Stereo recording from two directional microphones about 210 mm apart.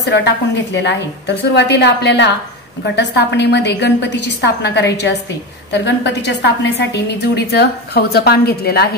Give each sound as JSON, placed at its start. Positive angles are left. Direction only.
{"t": 0.0, "sound": "a woman's voice", "side_deg": 55}